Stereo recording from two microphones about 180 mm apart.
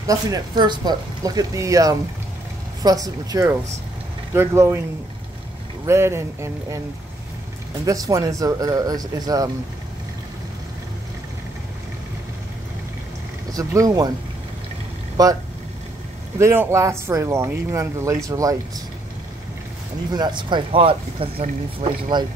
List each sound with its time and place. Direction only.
0.0 s speech: 20° right (ahead or behind)
5.9 s speech: 15° right (ahead or behind)
7.8 s speech: 20° right (ahead or behind)
13.5 s speech: 20° right (ahead or behind)
15.2 s speech: 20° right (ahead or behind)
16.3 s speech: 15° right (ahead or behind)
20.1 s speech: 25° right (ahead or behind)